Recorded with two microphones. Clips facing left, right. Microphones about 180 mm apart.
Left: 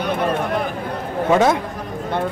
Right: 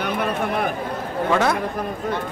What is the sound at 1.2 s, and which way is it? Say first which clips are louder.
Speech: left 5 dB; 20° left (ahead or behind).